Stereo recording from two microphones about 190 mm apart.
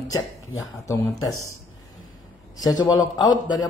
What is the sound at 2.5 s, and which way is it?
A man's voice, 20° left (ahead or behind).